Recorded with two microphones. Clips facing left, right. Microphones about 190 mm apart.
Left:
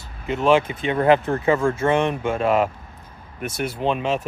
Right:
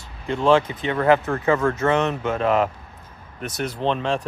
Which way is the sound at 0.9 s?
25° left (ahead or behind).